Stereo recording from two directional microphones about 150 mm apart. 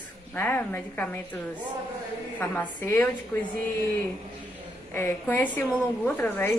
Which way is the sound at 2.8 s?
15° left (ahead or behind).